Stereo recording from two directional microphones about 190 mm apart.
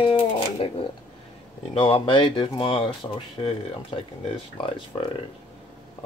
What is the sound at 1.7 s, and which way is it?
Speech, 30° left (ahead or behind).